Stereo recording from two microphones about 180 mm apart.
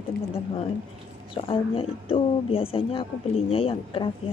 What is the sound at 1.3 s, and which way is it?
A woman's voice, 30° left (ahead or behind).